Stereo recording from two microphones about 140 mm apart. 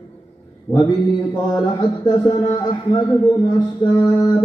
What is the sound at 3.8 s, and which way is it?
Mantra, 35° left (ahead or behind).